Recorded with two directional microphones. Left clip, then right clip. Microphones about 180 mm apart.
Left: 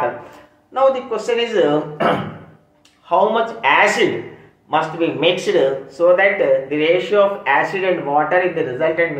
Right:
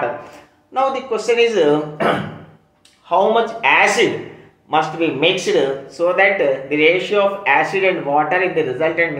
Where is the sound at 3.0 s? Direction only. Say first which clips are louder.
Right 1 dB; 15° right (ahead or behind).